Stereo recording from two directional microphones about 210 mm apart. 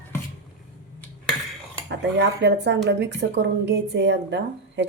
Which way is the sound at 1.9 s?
55° right (ahead or behind).